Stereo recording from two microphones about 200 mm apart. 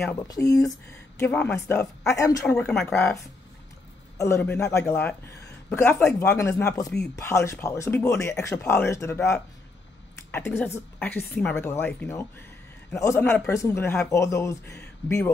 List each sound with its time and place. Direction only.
0.1 s speech: 15° left (ahead or behind)
2.5 s speech: 5° left (ahead or behind)
4.2 s speech: 10° left (ahead or behind)
11.0 s speech: 10° left (ahead or behind)